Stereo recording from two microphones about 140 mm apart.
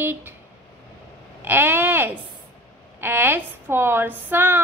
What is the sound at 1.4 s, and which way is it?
A woman's voice, 15° right (ahead or behind).